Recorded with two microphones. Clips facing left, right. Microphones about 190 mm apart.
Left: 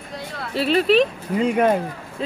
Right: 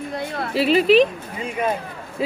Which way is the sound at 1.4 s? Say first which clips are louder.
Left 6 dB; 70° left (ahead or behind).